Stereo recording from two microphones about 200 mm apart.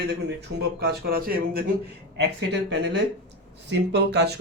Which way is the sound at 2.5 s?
60° right (ahead or behind).